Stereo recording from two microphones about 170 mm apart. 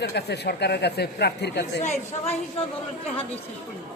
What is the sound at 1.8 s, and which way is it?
Speech, 40° left (ahead or behind).